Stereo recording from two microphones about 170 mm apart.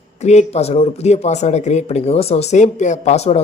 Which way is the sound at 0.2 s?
40° left (ahead or behind).